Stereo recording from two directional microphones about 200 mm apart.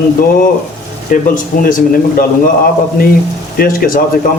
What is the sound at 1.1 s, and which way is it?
Speech, 40° left (ahead or behind).